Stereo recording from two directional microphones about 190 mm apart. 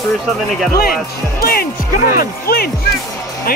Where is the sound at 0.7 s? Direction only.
50° left (ahead or behind).